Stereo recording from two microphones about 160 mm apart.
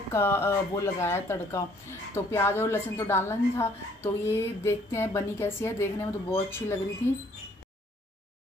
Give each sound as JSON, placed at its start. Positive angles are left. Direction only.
{"t": 0.1, "sound": "speech", "side_deg": 15}